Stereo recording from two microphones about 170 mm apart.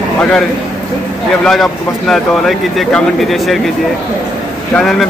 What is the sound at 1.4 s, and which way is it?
Speech, centre (ahead or behind).